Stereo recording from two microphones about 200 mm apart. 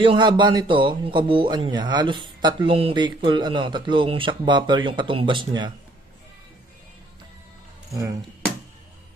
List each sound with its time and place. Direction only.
0.0 s a man's voice: 25° right (ahead or behind)